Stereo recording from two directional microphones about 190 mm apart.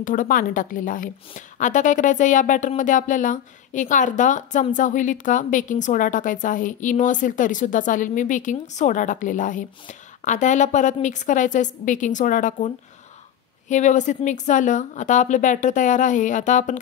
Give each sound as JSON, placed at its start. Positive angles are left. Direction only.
{"t": 0.0, "sound": "a woman's voice", "side_deg": 45}